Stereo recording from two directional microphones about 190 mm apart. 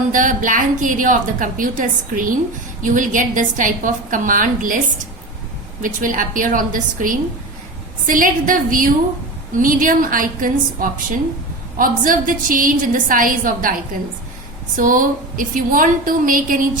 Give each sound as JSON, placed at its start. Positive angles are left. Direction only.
{"t": 0.1, "sound": "a woman's voice", "side_deg": -45}
{"t": 5.8, "sound": "a woman's voice", "side_deg": -45}
{"t": 14.8, "sound": "a woman's voice", "side_deg": -45}